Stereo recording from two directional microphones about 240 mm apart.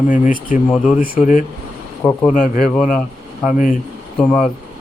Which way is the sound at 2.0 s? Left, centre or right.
Centre.